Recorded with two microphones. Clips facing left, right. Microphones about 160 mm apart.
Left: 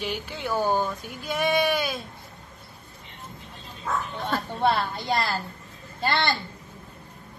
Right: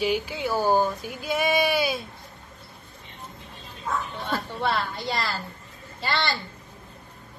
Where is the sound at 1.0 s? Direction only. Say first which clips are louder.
Right 1 dB; 5° right (ahead or behind).